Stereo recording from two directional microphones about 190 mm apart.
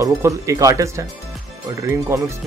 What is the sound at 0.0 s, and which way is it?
Speech, 15° right (ahead or behind).